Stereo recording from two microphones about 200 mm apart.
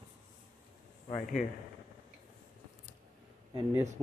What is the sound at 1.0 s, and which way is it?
Speech, 30° left (ahead or behind).